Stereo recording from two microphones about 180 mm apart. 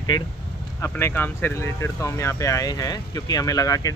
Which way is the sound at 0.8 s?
15° left (ahead or behind).